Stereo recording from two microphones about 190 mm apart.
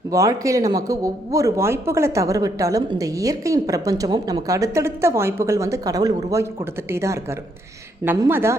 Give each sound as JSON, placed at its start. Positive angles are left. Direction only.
{"t": 0.1, "sound": "a woman's voice", "side_deg": -15}